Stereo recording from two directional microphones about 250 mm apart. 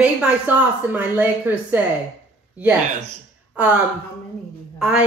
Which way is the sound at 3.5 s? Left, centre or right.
Centre.